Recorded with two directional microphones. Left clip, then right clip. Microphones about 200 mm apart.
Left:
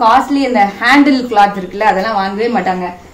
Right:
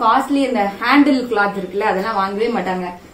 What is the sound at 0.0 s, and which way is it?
A woman's voice, 10° left (ahead or behind).